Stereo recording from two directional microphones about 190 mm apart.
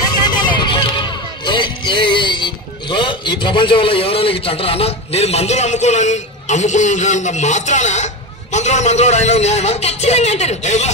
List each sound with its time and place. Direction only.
0.2 s speech: 20° left (ahead or behind)